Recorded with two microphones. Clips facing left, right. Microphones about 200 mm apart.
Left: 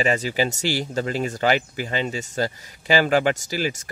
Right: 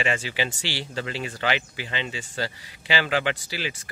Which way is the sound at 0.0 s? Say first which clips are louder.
Left 5 dB; 40° left (ahead or behind).